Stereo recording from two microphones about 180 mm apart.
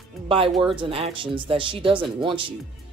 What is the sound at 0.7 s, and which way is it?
Speech, 30° right (ahead or behind).